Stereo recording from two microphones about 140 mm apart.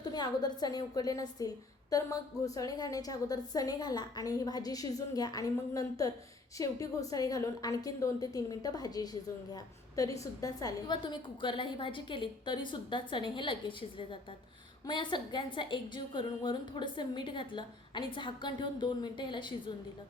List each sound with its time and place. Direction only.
0.0 s a woman's voice: 30° left (ahead or behind)